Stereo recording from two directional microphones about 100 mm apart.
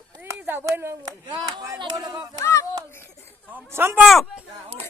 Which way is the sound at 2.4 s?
30° left (ahead or behind).